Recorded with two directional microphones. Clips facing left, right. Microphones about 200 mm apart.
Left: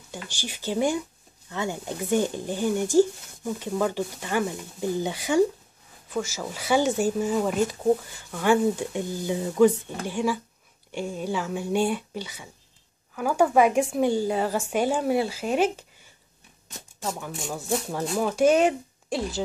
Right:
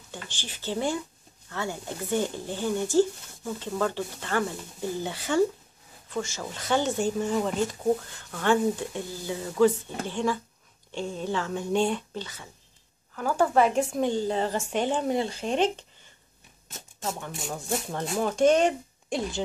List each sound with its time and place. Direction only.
0.1 s speech: 10° left (ahead or behind)